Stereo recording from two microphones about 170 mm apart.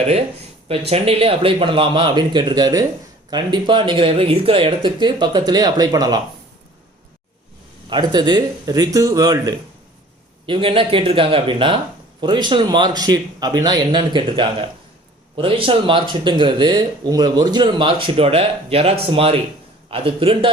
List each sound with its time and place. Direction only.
0.9 s speech: 35° right (ahead or behind)
7.9 s speech: 25° right (ahead or behind)